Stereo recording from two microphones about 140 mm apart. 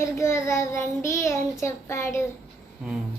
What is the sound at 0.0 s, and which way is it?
Child singing, 20° left (ahead or behind).